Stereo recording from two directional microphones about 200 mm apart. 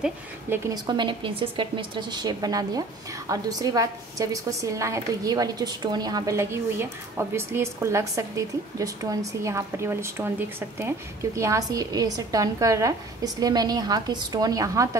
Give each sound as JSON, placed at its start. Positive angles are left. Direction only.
{"t": 0.0, "sound": "a woman's voice", "side_deg": -10}
{"t": 0.8, "sound": "a woman's voice", "side_deg": -25}